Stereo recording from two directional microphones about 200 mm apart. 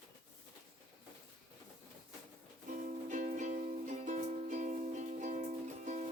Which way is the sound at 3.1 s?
40° right (ahead or behind).